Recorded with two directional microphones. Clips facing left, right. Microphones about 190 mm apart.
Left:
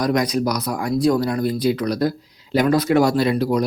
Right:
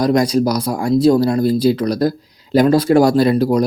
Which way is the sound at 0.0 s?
30° right (ahead or behind).